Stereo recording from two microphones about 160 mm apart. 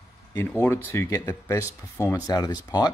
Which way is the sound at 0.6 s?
15° left (ahead or behind).